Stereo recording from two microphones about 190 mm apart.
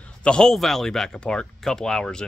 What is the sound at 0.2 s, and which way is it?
Speech, 5° left (ahead or behind).